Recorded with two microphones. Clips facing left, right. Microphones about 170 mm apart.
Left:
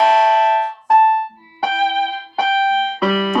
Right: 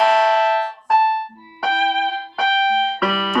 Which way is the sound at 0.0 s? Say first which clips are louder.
Left 2 dB; 25° left (ahead or behind).